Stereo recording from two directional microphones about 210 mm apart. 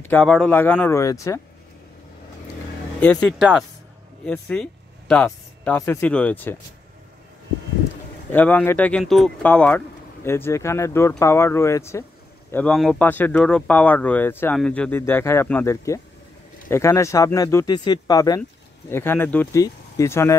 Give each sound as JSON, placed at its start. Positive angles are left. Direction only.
{"t": 0.0, "sound": "speech", "side_deg": 5}
{"t": 3.0, "sound": "speech", "side_deg": 5}
{"t": 8.3, "sound": "speech", "side_deg": 10}